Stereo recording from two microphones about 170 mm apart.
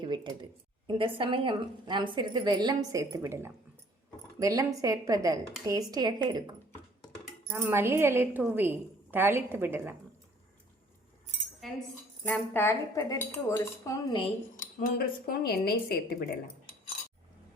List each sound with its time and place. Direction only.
0.0 s a woman's voice: 25° right (ahead or behind)
7.5 s a woman's voice: 15° right (ahead or behind)
11.6 s speech: centre (ahead or behind)
12.2 s speech: 10° left (ahead or behind)
14.5 s speech: 55° left (ahead or behind)